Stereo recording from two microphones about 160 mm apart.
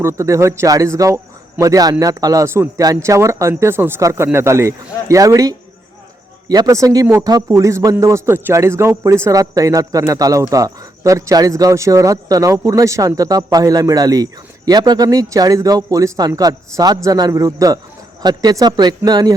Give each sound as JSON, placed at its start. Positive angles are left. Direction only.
{"t": 0.0, "sound": "a man's voice", "side_deg": -15}